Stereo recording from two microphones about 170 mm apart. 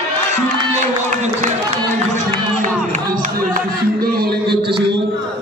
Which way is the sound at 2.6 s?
45° right (ahead or behind).